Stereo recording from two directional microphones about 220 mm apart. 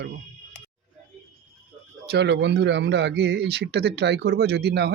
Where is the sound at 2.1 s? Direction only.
50° right (ahead or behind).